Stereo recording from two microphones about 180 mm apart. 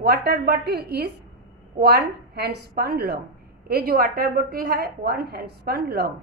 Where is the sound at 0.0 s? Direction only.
60° right (ahead or behind).